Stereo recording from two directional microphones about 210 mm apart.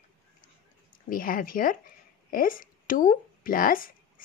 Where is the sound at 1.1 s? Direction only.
40° left (ahead or behind).